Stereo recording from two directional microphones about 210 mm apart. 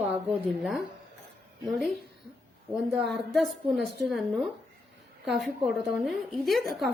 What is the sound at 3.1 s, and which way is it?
A woman's voice, centre (ahead or behind).